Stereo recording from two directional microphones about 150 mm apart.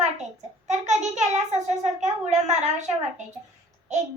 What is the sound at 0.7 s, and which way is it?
A child's voice, 50° right (ahead or behind).